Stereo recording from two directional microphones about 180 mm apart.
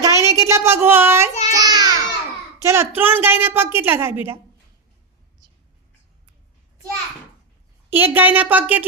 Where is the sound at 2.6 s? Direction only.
15° right (ahead or behind).